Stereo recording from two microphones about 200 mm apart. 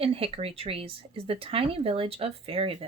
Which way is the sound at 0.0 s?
30° right (ahead or behind).